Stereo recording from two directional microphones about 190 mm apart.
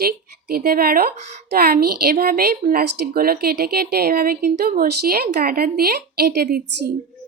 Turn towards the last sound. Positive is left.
turn(degrees=-55)  # may be behind; listen again after turning